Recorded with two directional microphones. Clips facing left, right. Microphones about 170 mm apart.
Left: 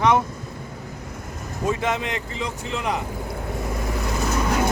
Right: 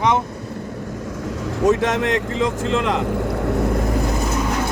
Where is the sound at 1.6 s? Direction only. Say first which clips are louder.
Right 7 dB; 85° right.